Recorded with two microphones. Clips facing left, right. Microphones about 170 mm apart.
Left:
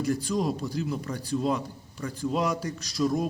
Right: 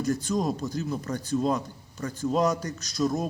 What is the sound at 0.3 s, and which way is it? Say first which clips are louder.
Speech: right 1 dB; 5° right (ahead or behind).